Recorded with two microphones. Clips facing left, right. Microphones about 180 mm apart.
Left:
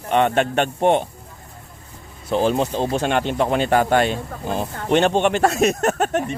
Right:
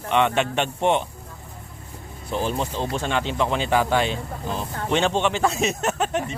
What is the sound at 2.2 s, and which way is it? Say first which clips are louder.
Speech: left 7 dB; 90° left.